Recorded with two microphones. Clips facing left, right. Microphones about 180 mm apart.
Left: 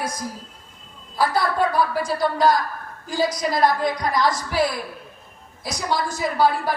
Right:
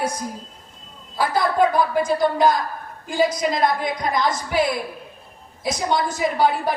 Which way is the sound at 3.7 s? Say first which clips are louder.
Left 1 dB; 20° right (ahead or behind).